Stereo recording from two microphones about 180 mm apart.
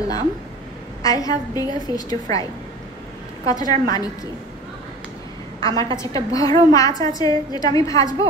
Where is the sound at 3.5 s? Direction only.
20° left (ahead or behind).